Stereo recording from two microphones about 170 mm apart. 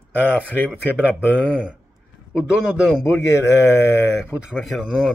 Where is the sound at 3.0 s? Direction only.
15° left (ahead or behind).